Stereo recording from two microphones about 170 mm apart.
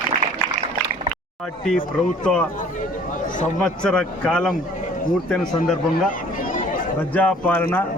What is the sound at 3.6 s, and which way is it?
Speech, 5° left (ahead or behind).